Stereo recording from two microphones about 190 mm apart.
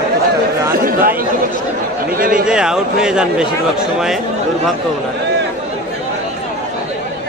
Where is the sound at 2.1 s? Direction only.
50° right (ahead or behind).